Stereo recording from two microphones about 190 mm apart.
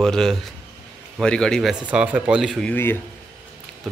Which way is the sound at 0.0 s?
Centre (ahead or behind).